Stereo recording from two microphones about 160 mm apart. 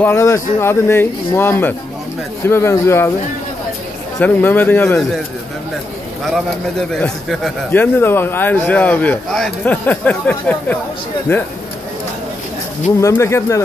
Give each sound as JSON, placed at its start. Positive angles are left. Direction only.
{"t": 0.0, "sound": "a man's voice", "side_deg": 15}
{"t": 4.2, "sound": "a man's voice", "side_deg": 10}
{"t": 6.9, "sound": "a man's voice", "side_deg": 0}
{"t": 7.7, "sound": "a man's voice", "side_deg": 10}
{"t": 13.0, "sound": "a man's voice", "side_deg": 20}